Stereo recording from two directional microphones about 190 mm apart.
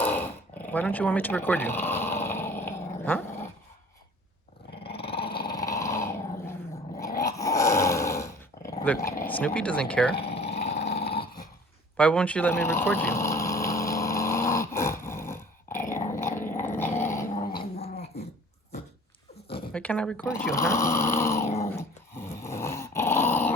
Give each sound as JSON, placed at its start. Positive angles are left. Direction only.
{"t": 0.0, "sound": "dog", "side_deg": 10}
{"t": 4.8, "sound": "dog", "side_deg": 30}
{"t": 5.5, "sound": "dog", "side_deg": 20}
{"t": 9.0, "sound": "a sound", "side_deg": 10}
{"t": 9.6, "sound": "speech", "side_deg": 5}
{"t": 10.2, "sound": "dog", "side_deg": 30}
{"t": 11.9, "sound": "a sound", "side_deg": 5}
{"t": 19.7, "sound": "snoring", "side_deg": 5}